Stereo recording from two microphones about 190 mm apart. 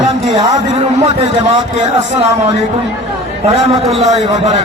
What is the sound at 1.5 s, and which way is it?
Speech, 35° right (ahead or behind).